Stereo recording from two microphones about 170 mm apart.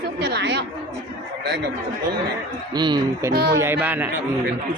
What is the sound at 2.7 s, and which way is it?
Speech, 25° right (ahead or behind).